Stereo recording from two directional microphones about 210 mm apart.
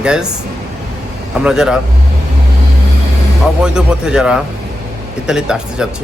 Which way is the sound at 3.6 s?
5° right (ahead or behind).